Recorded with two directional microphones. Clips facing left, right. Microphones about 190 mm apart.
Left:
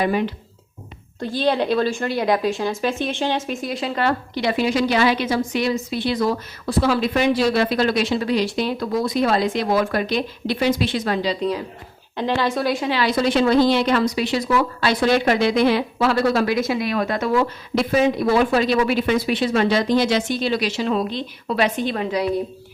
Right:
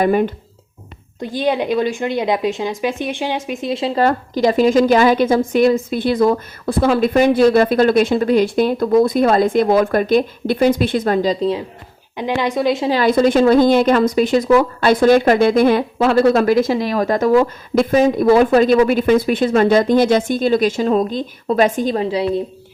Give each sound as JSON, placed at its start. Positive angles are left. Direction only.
{"t": 0.0, "sound": "a woman's voice", "side_deg": -50}
{"t": 1.2, "sound": "speech", "side_deg": -15}
{"t": 4.0, "sound": "a woman's voice", "side_deg": -40}
{"t": 11.3, "sound": "speech", "side_deg": -25}
{"t": 12.1, "sound": "speech", "side_deg": -15}
{"t": 12.9, "sound": "a woman's voice", "side_deg": -50}